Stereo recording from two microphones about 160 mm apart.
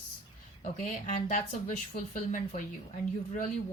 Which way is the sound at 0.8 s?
50° left (ahead or behind).